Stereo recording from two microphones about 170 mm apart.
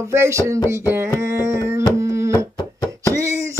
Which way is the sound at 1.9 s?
15° right (ahead or behind).